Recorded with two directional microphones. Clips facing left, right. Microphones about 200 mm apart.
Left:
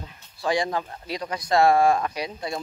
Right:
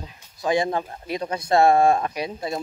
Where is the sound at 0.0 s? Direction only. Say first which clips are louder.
Right 1 dB; 20° right (ahead or behind).